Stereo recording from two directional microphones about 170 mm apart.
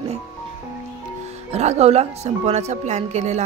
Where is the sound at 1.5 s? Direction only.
40° right (ahead or behind).